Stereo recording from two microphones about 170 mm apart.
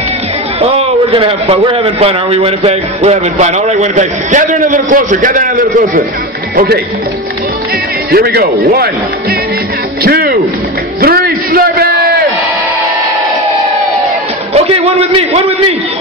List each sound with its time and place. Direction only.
0.6 s a man's voice: 35° right (ahead or behind); by 6.0 s 55° right (ahead or behind)
8.1 s a man's voice: 70° right (ahead or behind)
10.0 s a sound: 65° right (ahead or behind)
14.5 s a man's voice: 35° right (ahead or behind)